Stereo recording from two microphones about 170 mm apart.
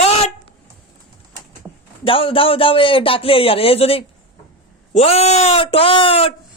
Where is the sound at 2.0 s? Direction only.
30° left (ahead or behind).